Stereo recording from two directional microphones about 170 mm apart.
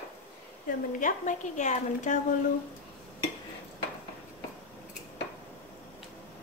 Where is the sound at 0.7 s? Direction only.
50° left (ahead or behind).